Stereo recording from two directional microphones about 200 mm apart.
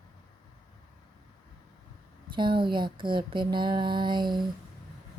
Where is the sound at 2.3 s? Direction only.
25° right (ahead or behind).